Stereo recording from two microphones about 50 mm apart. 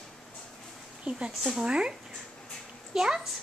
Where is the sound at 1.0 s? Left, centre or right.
Right.